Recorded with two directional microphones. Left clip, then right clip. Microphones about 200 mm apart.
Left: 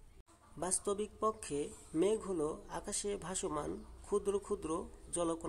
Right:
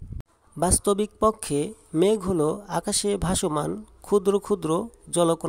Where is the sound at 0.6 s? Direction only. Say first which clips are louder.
Right 15 dB; 45° right (ahead or behind).